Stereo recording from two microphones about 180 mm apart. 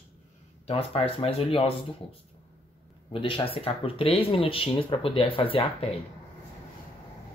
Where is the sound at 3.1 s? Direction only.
30° left (ahead or behind).